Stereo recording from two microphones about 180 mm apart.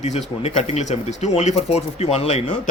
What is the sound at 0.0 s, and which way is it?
Speech, 40° left (ahead or behind).